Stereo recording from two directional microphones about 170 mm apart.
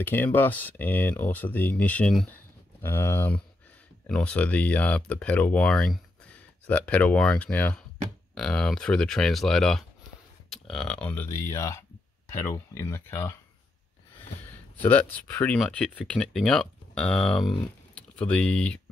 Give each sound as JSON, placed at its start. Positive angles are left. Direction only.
{"t": 0.0, "sound": "speech", "side_deg": 10}
{"t": 14.8, "sound": "speech", "side_deg": 10}